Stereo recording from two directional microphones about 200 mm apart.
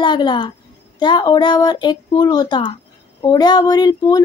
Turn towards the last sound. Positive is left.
turn(degrees=20)  # may be behind; listen again after turning